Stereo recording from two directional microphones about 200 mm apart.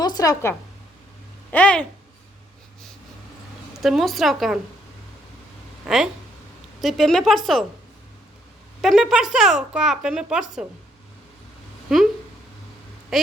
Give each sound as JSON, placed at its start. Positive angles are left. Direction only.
{"t": 0.0, "sound": "a woman's voice", "side_deg": 20}
{"t": 1.5, "sound": "a child's voice", "side_deg": 5}
{"t": 3.8, "sound": "speech", "side_deg": 0}
{"t": 5.8, "sound": "speech", "side_deg": 0}
{"t": 8.8, "sound": "speech", "side_deg": 0}
{"t": 13.1, "sound": "speech", "side_deg": 0}